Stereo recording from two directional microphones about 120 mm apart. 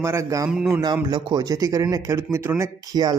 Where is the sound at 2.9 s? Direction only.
35° right (ahead or behind).